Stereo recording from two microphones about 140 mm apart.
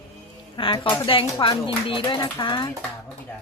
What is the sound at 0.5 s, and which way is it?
Speech, 40° left (ahead or behind).